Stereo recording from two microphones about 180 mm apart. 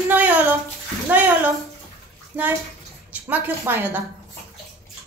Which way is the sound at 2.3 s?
10° right (ahead or behind).